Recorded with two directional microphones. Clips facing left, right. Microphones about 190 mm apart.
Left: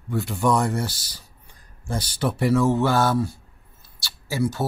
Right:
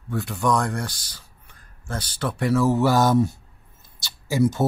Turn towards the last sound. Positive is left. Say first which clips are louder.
# right 4 dB
turn(degrees=-20)  # may be behind; listen again after turning